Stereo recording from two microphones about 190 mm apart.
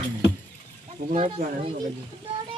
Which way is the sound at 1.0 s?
40° right (ahead or behind).